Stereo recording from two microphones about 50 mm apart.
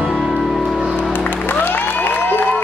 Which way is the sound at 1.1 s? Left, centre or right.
Left.